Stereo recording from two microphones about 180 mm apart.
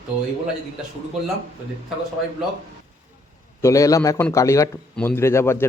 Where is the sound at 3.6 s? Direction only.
20° left (ahead or behind).